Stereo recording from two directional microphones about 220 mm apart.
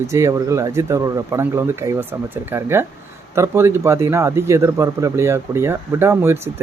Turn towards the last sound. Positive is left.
turn(degrees=-10)  # may be behind; listen again after turning